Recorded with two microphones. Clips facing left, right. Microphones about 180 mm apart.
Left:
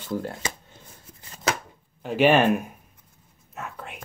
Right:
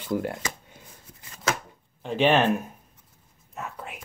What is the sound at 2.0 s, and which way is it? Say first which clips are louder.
Speech: left 2 dB; 5° left (ahead or behind).